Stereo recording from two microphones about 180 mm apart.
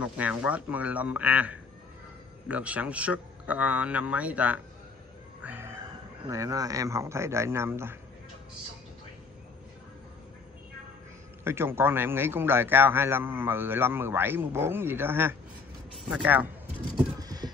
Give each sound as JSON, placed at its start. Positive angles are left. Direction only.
{"t": 0.0, "sound": "a man's voice", "side_deg": -5}
{"t": 5.4, "sound": "music", "side_deg": -10}
{"t": 6.2, "sound": "a man's voice", "side_deg": -20}
{"t": 11.4, "sound": "a man's voice", "side_deg": -15}
{"t": 17.2, "sound": "clip-clop", "side_deg": -20}